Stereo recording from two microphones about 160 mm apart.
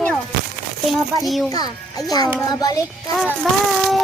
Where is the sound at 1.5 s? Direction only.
25° left (ahead or behind).